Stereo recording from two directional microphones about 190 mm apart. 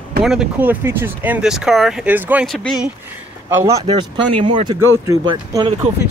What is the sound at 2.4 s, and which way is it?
Speech, centre (ahead or behind).